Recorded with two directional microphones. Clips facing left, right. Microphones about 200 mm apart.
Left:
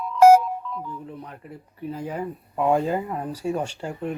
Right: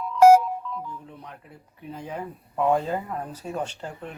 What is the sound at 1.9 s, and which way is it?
Speech, 5° left (ahead or behind).